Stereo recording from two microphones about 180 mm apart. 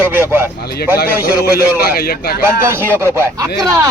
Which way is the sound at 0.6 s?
60° left (ahead or behind).